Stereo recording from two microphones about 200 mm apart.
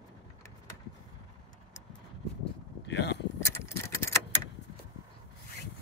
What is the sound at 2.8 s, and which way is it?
Vehicle, 60° left (ahead or behind).